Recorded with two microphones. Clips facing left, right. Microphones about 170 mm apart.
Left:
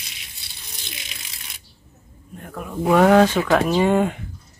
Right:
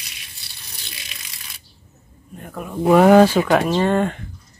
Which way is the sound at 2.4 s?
5° right (ahead or behind).